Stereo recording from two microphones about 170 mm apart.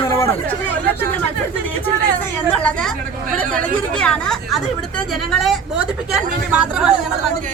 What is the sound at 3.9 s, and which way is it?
Speech, 5° left (ahead or behind).